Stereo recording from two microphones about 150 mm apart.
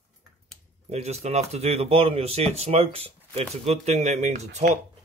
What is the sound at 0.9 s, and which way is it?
Speech, 45° right (ahead or behind).